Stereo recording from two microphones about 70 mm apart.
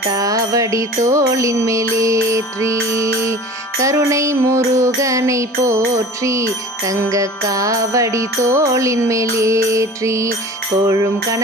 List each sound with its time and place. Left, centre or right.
0.1 s music: right